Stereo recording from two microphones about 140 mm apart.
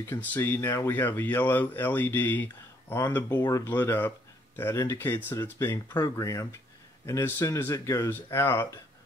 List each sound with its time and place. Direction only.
0.0 s speech: 15° left (ahead or behind)